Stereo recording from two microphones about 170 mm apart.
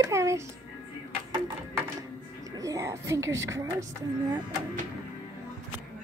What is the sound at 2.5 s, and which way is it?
Speech, 20° right (ahead or behind).